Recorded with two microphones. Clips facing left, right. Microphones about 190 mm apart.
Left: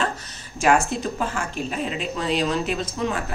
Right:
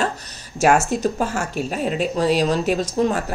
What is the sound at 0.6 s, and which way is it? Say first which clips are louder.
Speech: right 3 dB; 45° right (ahead or behind).